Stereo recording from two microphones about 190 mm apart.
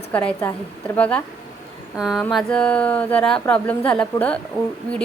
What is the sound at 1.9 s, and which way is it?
A woman's voice, centre (ahead or behind).